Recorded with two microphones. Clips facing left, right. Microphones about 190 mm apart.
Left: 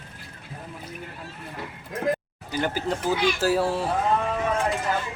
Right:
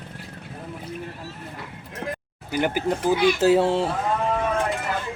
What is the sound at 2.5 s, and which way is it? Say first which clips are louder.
Speech: right 3 dB; 15° right (ahead or behind).